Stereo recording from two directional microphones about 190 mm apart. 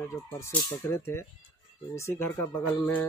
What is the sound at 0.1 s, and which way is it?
Speech, 15° left (ahead or behind).